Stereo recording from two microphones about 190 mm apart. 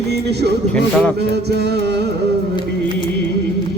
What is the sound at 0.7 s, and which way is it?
Music, 5° left (ahead or behind).